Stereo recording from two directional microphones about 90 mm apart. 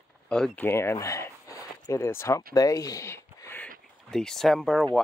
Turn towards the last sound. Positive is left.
turn(degrees=5)  # may be behind; listen again after turning